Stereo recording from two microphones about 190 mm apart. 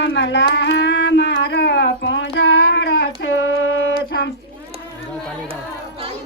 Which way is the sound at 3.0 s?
90° left.